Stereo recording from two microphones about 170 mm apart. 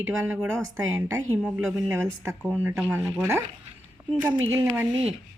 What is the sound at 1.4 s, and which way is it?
Speech, 10° right (ahead or behind).